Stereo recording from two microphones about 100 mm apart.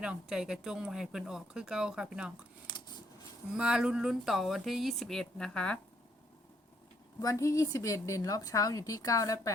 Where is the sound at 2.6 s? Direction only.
50° left (ahead or behind).